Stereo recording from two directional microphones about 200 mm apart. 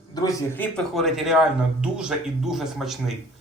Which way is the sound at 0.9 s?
Centre (ahead or behind).